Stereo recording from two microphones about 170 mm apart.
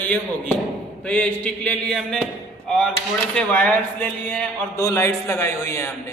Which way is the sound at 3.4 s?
10° left (ahead or behind).